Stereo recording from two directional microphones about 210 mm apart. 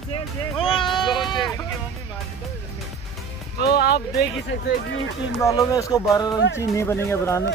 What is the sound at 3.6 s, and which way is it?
Music, 50° left (ahead or behind).